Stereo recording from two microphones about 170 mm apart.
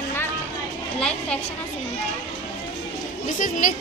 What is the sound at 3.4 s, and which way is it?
Speech, 50° left (ahead or behind).